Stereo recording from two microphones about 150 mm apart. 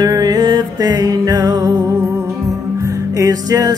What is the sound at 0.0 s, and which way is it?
Music, 25° right (ahead or behind).